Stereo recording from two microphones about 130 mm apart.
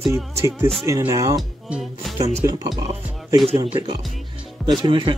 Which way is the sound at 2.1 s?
55° right (ahead or behind).